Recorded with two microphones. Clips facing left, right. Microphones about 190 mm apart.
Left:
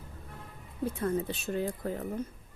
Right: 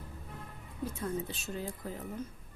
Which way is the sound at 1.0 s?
60° left (ahead or behind).